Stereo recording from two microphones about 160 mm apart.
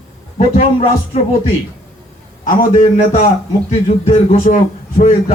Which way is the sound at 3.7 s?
40° left (ahead or behind).